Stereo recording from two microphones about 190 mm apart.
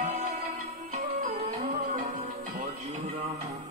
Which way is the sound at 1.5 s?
45° right (ahead or behind).